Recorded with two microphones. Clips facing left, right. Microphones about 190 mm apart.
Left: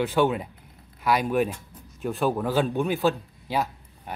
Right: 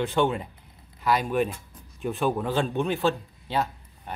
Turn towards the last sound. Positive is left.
turn(degrees=5)  # may be behind; listen again after turning